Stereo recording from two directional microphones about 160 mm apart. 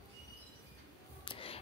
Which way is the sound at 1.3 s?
35° left (ahead or behind).